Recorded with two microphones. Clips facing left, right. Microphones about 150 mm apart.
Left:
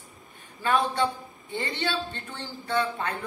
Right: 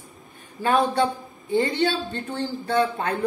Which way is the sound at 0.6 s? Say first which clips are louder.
Right 4 dB; 40° right (ahead or behind).